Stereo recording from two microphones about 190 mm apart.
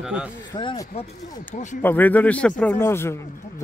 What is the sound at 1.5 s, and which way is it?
Speech, 40° left (ahead or behind).